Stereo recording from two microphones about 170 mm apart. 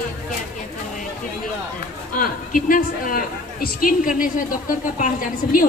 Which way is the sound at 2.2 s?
55° left (ahead or behind).